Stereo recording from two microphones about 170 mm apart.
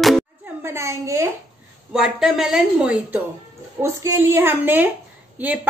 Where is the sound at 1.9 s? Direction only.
5° right (ahead or behind).